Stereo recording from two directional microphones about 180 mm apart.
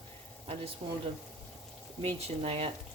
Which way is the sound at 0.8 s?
30° right (ahead or behind).